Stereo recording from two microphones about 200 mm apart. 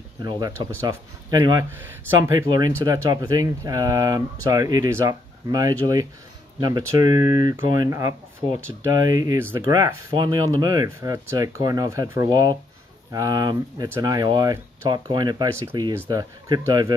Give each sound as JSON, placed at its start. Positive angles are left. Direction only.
{"t": 0.2, "sound": "speech", "side_deg": -20}